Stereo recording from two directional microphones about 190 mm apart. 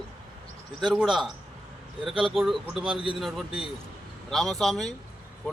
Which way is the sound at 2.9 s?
25° right (ahead or behind).